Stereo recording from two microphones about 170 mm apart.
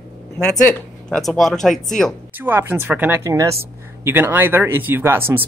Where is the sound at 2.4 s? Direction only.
10° right (ahead or behind).